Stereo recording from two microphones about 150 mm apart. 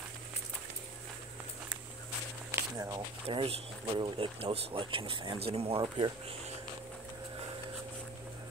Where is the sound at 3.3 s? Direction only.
40° right (ahead or behind).